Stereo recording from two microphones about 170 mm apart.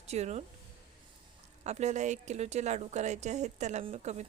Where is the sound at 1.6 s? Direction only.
40° right (ahead or behind).